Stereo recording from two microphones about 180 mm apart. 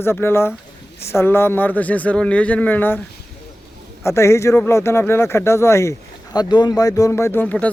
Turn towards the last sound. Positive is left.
turn(degrees=10)  # may be behind; listen again after turning